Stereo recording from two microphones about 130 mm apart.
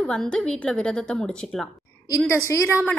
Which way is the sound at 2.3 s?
20° left (ahead or behind).